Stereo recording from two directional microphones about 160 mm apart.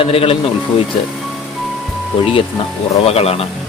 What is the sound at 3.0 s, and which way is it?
Speech, 40° left (ahead or behind).